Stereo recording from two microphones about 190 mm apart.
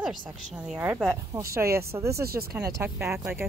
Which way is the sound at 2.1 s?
55° right (ahead or behind).